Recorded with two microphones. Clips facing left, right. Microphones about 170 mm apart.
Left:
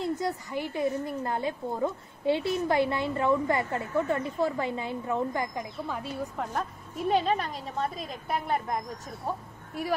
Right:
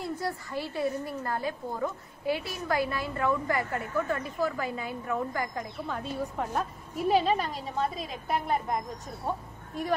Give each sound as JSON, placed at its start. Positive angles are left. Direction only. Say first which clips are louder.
{"t": 0.0, "sound": "a woman's voice", "louder": "left 3 dB", "side_deg": 20}
{"t": 5.9, "sound": "a woman's voice", "louder": "right 1 dB", "side_deg": 0}